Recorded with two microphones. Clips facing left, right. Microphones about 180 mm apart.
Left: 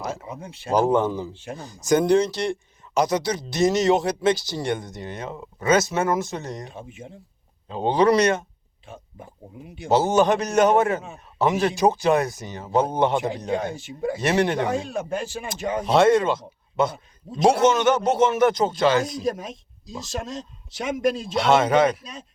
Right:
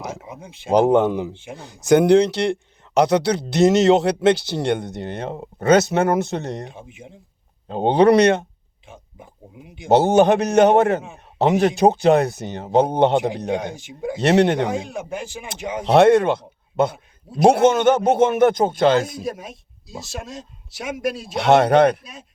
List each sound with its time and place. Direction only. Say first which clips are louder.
0.0 s speech: left 1 dB; 10° right (ahead or behind)
0.7 s speech: right 4 dB; 65° right (ahead or behind)
6.7 s speech: left 1 dB; 10° right (ahead or behind)
7.7 s speech: right 4 dB; 60° right (ahead or behind)
9.6 s speech: left 1 dB; 15° right (ahead or behind)
9.9 s speech: right 4 dB; 60° right (ahead or behind)
13.6 s speech: left 1 dB; 10° right (ahead or behind)
14.2 s speech: right 6 dB; 65° right (ahead or behind)
14.8 s speech: left 2 dB; 15° right (ahead or behind)
15.8 s speech: right 4 dB; 65° right (ahead or behind)
19.3 s speech: left 2 dB; 5° right (ahead or behind)
21.5 s speech: right 5 dB; 60° right (ahead or behind)